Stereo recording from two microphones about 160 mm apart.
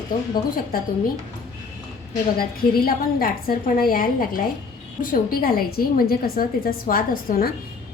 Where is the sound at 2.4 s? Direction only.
65° left (ahead or behind).